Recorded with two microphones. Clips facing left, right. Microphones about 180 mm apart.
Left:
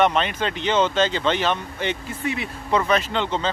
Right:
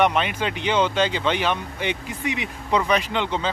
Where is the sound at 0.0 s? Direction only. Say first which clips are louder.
Left 1 dB; 10° right (ahead or behind).